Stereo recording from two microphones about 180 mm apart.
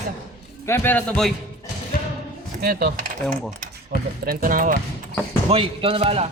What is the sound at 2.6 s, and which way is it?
Mechanisms, 55° right (ahead or behind).